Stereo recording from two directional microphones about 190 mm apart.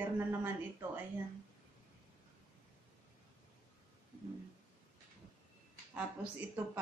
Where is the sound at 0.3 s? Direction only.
15° right (ahead or behind).